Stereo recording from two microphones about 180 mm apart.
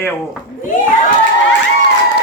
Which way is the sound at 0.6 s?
50° left (ahead or behind).